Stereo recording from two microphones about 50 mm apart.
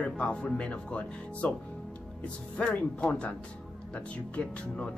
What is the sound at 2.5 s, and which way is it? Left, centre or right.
Speech, left.